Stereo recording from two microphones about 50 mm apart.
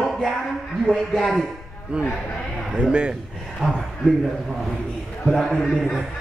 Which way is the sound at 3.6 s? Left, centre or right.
Centre.